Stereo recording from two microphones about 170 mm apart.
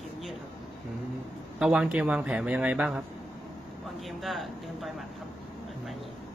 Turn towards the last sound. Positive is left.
turn(degrees=0)  # may be behind; listen again after turning